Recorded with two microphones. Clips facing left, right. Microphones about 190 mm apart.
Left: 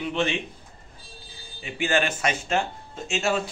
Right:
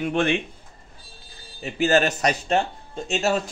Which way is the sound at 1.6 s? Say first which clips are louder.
Right 5 dB; 40° right (ahead or behind).